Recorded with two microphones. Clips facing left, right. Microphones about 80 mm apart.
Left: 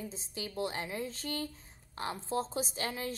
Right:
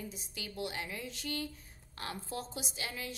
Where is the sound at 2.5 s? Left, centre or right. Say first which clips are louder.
Left 6 dB; left.